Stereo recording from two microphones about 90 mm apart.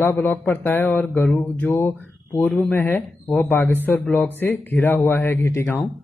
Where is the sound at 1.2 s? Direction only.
15° left (ahead or behind).